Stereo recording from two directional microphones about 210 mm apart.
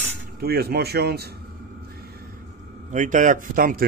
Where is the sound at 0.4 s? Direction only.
50° right (ahead or behind).